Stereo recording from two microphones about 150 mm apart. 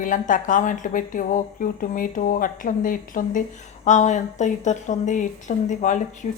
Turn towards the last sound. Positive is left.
turn(degrees=55)  # may be behind; listen again after turning